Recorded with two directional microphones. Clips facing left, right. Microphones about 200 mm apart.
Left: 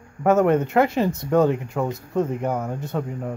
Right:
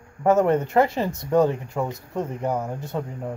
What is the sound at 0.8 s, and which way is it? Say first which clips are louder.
Speech: left 4 dB; 20° left (ahead or behind).